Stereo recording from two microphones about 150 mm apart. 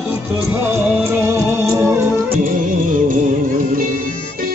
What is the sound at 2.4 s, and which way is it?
Music, 60° right (ahead or behind).